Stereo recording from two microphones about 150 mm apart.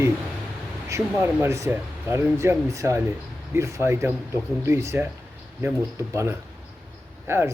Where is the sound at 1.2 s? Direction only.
15° right (ahead or behind).